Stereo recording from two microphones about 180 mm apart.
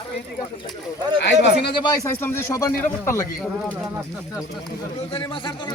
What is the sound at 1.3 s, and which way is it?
Speech, 75° left (ahead or behind).